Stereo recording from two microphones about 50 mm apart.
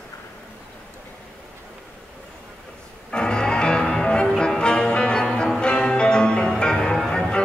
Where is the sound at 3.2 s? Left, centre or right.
Centre.